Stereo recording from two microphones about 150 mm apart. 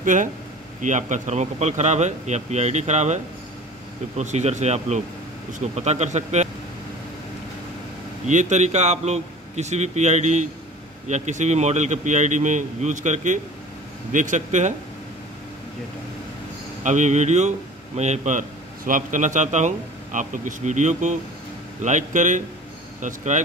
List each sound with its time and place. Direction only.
0.0 s speech: 60° right (ahead or behind)
4.2 s speech: 50° right (ahead or behind)
8.3 s a man's voice: 55° right (ahead or behind)
16.8 s speech: 55° right (ahead or behind)
18.9 s a man's voice: 60° right (ahead or behind)